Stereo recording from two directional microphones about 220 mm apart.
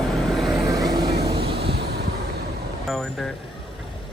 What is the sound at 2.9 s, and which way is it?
Vehicle, centre (ahead or behind).